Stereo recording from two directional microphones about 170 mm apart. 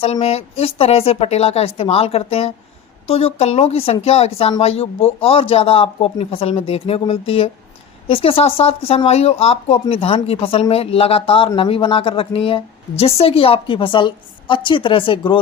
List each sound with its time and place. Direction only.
0.0 s speech: 35° left (ahead or behind)